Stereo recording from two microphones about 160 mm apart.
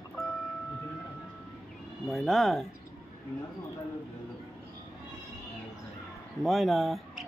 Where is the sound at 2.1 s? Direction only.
Centre (ahead or behind).